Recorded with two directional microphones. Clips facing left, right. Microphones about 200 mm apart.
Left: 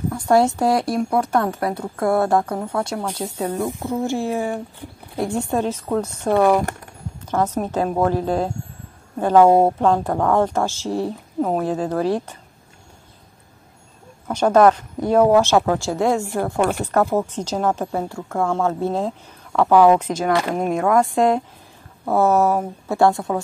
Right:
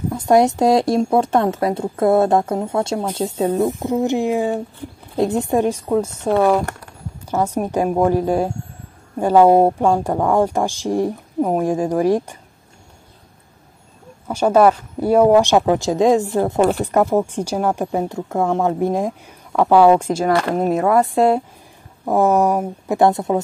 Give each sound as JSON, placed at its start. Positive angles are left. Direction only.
{"t": 0.1, "sound": "a woman's voice", "side_deg": -20}
{"t": 14.2, "sound": "a woman's voice", "side_deg": -10}
{"t": 22.0, "sound": "a woman's voice", "side_deg": -15}